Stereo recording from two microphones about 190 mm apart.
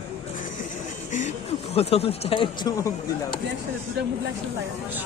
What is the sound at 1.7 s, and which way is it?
Speech, 30° left (ahead or behind).